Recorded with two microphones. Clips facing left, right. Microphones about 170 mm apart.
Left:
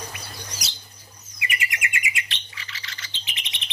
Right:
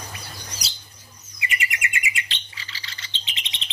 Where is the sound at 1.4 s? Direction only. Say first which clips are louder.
Right 1 dB; 25° right (ahead or behind).